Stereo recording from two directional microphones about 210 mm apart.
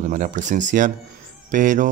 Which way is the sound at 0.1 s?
35° right (ahead or behind).